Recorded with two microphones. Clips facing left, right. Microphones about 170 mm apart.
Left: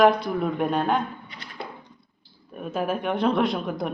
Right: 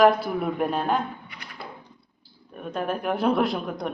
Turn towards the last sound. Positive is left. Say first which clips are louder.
# left 2 dB
turn(degrees=0)  # may be behind; listen again after turning